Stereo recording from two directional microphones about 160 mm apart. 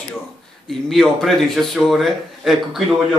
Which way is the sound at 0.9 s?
Centre (ahead or behind).